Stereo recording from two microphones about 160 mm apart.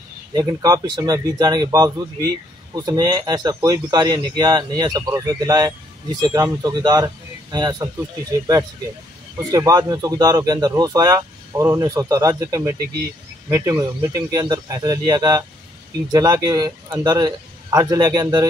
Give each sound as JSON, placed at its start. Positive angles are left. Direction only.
{"t": 0.3, "sound": "speech", "side_deg": -25}
{"t": 9.5, "sound": "speech", "side_deg": -20}